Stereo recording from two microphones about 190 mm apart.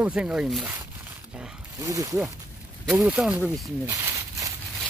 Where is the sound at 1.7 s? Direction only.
20° right (ahead or behind).